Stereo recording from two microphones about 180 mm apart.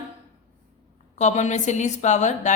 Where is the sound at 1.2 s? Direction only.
40° left (ahead or behind).